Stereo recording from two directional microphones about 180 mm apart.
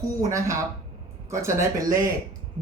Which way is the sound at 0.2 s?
15° right (ahead or behind).